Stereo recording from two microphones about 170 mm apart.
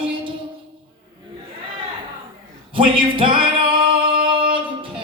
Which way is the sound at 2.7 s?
30° right (ahead or behind).